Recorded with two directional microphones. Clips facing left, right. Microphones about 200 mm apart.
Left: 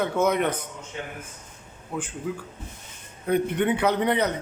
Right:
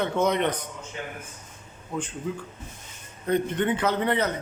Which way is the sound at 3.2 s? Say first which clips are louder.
Left 1 dB; 10° left (ahead or behind).